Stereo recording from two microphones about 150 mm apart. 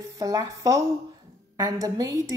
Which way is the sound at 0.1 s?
25° right (ahead or behind).